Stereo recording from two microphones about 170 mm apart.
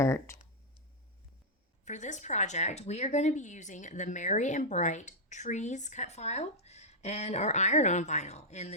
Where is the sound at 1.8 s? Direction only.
45° left (ahead or behind).